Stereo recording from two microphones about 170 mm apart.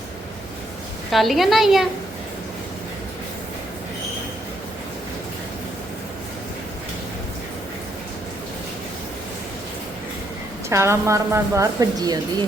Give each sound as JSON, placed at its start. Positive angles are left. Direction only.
{"t": 1.1, "sound": "a woman's voice", "side_deg": 0}
{"t": 10.7, "sound": "a woman's voice", "side_deg": -15}